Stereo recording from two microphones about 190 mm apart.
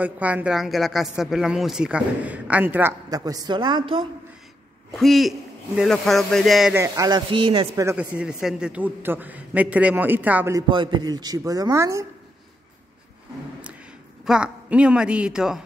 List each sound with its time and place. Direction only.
0.0 s speech: 10° right (ahead or behind); by 4.0 s 25° right (ahead or behind)
4.9 s speech: centre (ahead or behind)
6.7 s speech: 15° right (ahead or behind)
7.8 s a man's voice: 10° right (ahead or behind)
10.7 s speech: 25° right (ahead or behind)
14.2 s speech: 5° right (ahead or behind)